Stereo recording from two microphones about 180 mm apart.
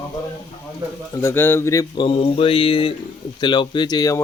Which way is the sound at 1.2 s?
10° left (ahead or behind).